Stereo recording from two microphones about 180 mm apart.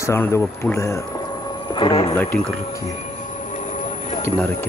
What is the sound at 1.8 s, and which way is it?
Speech, 25° left (ahead or behind).